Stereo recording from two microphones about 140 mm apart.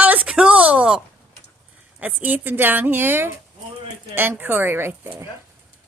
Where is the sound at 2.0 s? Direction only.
10° right (ahead or behind).